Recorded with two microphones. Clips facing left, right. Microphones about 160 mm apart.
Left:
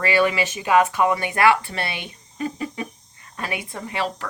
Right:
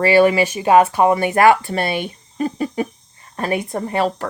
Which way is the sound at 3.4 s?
40° right (ahead or behind).